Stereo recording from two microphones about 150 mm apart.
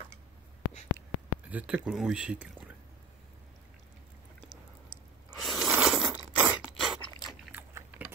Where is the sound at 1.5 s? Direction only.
10° right (ahead or behind).